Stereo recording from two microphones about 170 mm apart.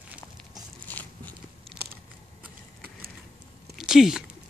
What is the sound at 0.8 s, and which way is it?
Biting, 10° left (ahead or behind).